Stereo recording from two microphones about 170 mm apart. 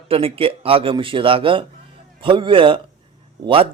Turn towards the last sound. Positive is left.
turn(degrees=-35)  # may be behind; listen again after turning